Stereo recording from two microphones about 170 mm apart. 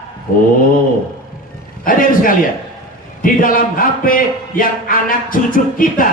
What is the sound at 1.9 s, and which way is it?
A man's voice, 55° left (ahead or behind).